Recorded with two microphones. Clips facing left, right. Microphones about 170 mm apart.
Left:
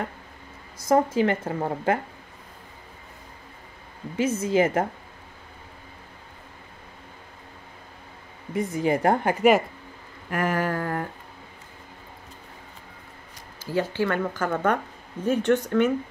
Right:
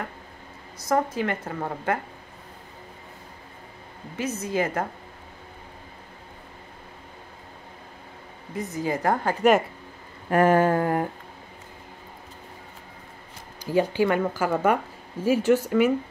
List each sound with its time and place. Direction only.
0.8 s speech: 25° left (ahead or behind)
4.2 s speech: 25° left (ahead or behind)
8.5 s speech: 25° left (ahead or behind)
10.3 s a sound: 30° right (ahead or behind)
13.7 s a woman's voice: 15° right (ahead or behind)